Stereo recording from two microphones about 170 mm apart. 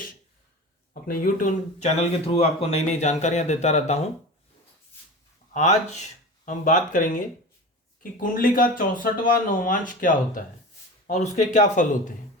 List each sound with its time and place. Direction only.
1.0 s speech: 55° left (ahead or behind)
5.5 s speech: 40° left (ahead or behind)
8.2 s speech: 55° left (ahead or behind)